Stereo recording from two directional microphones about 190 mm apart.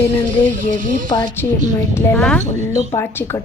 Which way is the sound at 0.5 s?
45° right (ahead or behind).